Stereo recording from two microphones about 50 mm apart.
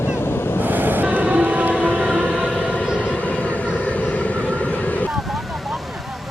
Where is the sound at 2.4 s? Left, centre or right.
Left.